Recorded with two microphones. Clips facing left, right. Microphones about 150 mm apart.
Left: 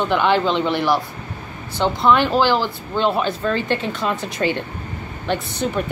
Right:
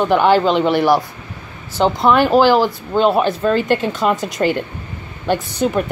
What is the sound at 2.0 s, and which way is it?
A woman's voice, 45° right (ahead or behind).